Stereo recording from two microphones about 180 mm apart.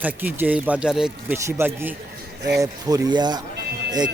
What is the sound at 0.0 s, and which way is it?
Speech, 10° right (ahead or behind).